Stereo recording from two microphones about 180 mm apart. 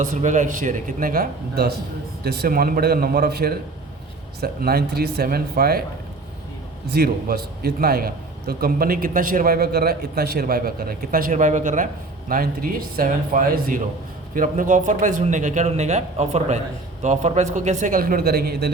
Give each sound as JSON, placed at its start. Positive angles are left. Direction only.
{"t": 0.0, "sound": "a man's voice", "side_deg": -40}
{"t": 6.8, "sound": "a man's voice", "side_deg": -60}